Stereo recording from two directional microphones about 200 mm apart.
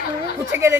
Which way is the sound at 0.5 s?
15° right (ahead or behind).